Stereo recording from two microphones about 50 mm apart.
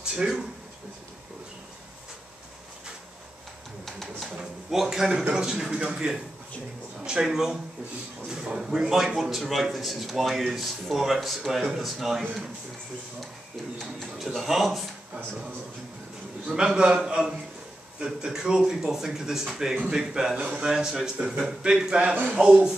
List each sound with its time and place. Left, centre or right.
0.0 s speech: centre
3.8 s pigeon: centre
5.3 s speech: centre
13.7 s speech: centre
16.5 s speech: centre
20.3 s speech: right
20.7 s speech: centre